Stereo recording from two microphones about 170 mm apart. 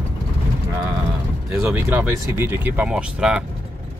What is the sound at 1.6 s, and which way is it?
Speech, 15° right (ahead or behind).